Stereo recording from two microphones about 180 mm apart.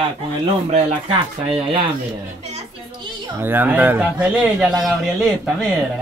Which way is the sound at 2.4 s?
30° right (ahead or behind).